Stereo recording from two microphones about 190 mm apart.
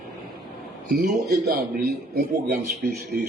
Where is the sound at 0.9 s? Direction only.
55° right (ahead or behind).